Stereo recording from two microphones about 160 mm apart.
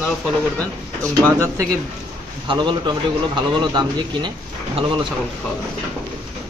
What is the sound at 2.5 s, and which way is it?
Speech, 30° right (ahead or behind).